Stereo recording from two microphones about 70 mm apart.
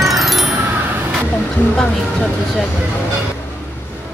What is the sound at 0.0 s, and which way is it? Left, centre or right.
Wind chime, centre.